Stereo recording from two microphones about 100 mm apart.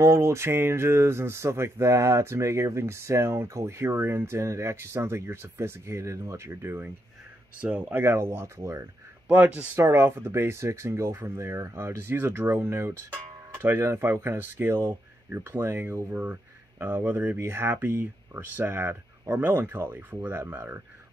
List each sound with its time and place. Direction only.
0.0 s speech: 25° right (ahead or behind)
9.3 s speech: 15° right (ahead or behind)